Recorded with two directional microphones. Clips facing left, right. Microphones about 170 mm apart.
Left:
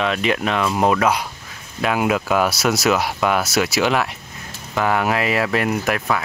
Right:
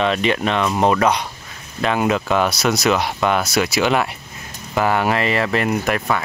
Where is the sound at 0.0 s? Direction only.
Centre (ahead or behind).